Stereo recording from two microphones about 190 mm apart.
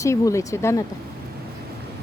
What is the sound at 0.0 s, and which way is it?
Speech, 15° left (ahead or behind).